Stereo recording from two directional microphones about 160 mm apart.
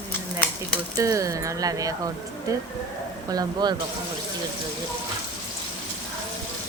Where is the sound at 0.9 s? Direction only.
20° right (ahead or behind).